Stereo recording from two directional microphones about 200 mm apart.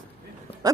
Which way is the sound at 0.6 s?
20° right (ahead or behind).